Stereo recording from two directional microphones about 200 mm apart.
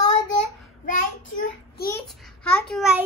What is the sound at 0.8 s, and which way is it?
Child singing, 40° left (ahead or behind).